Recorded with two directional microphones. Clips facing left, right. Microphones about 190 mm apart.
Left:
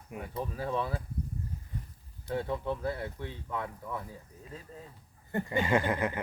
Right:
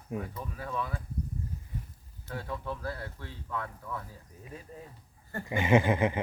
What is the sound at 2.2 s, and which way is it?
Speech, 20° left (ahead or behind).